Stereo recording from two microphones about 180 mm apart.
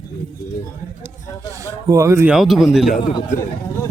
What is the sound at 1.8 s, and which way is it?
Speech, 15° right (ahead or behind).